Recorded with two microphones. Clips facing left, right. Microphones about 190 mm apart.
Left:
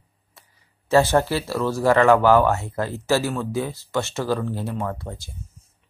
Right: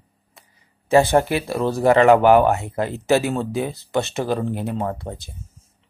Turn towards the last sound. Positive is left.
turn(degrees=-20)  # may be behind; listen again after turning